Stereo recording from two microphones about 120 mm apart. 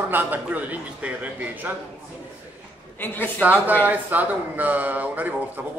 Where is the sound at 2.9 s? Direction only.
15° left (ahead or behind).